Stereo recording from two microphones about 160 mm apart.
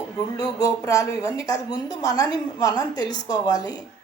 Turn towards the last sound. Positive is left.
turn(degrees=25)  # may be behind; listen again after turning